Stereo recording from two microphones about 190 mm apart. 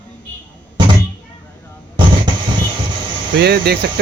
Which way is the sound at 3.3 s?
60° right (ahead or behind).